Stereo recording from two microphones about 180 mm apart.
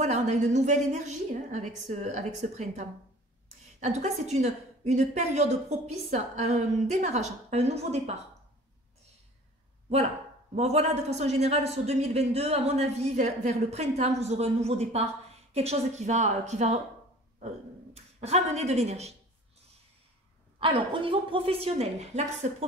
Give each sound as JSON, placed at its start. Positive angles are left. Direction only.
{"t": 0.0, "sound": "a man's voice", "side_deg": -40}
{"t": 10.5, "sound": "a man's voice", "side_deg": -35}
{"t": 17.9, "sound": "speech", "side_deg": -35}
{"t": 20.5, "sound": "a man's voice", "side_deg": -30}